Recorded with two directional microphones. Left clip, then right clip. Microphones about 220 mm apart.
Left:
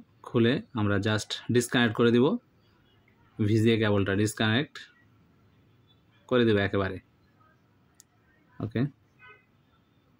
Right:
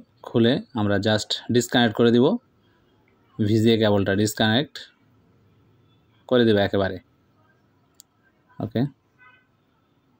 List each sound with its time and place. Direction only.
0.2 s speech: 15° right (ahead or behind)
3.3 s speech: 15° right (ahead or behind)
6.2 s speech: 15° right (ahead or behind)
8.5 s speech: 15° right (ahead or behind)